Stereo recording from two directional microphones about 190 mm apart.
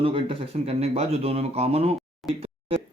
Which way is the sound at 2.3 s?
30° right (ahead or behind).